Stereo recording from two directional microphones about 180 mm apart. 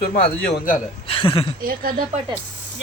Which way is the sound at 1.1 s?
30° left (ahead or behind).